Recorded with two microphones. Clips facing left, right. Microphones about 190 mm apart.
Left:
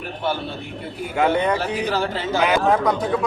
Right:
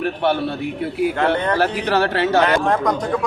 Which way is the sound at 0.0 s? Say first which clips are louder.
Right 6 dB; 70° right (ahead or behind).